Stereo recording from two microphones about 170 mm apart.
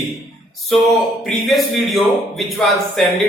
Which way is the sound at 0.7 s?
Centre (ahead or behind).